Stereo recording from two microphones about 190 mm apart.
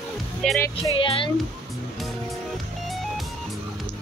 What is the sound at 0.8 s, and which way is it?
Speech, 25° left (ahead or behind).